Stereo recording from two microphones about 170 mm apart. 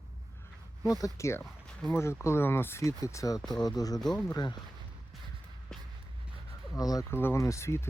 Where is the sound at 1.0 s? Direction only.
15° left (ahead or behind).